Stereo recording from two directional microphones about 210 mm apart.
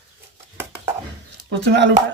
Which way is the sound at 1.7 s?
55° right (ahead or behind).